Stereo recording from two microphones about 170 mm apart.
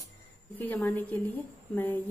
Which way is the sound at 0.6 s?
10° left (ahead or behind).